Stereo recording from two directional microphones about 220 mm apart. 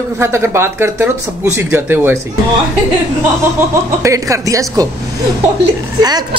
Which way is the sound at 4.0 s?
15° right (ahead or behind).